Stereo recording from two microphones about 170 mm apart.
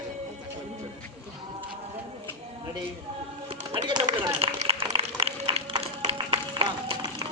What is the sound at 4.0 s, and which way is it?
Run, 40° right (ahead or behind).